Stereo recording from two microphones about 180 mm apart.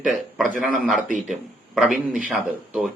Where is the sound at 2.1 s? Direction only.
5° right (ahead or behind).